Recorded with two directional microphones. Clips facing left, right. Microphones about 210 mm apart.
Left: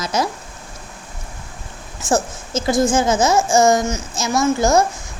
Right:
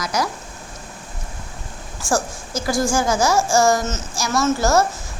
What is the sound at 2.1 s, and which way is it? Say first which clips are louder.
A woman's voice: left 3 dB; 20° left (ahead or behind).